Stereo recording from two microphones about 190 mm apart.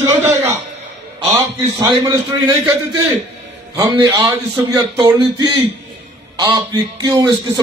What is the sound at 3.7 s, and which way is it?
A man's voice, 20° right (ahead or behind).